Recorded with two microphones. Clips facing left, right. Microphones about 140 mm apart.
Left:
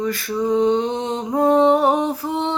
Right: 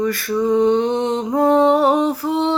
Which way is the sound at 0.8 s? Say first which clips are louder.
Right 4 dB; 60° right (ahead or behind).